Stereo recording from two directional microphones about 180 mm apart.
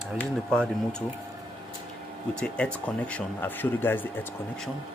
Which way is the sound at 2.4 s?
5° left (ahead or behind).